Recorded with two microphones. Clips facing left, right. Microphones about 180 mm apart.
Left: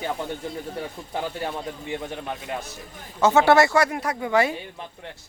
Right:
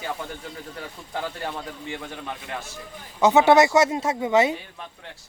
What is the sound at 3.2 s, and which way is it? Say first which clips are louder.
Speech: right 1 dB; 15° right (ahead or behind).